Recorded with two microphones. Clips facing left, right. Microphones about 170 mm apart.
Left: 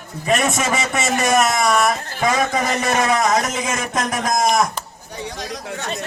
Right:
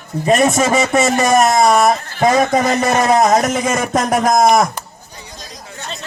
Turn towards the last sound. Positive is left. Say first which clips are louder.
# left 5 dB
turn(degrees=70)  # may be behind; listen again after turning